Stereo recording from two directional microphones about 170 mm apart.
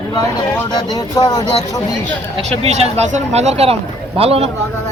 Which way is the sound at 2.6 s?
40° right (ahead or behind).